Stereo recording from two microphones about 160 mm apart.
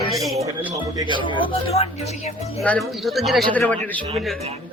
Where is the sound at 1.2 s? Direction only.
35° left (ahead or behind).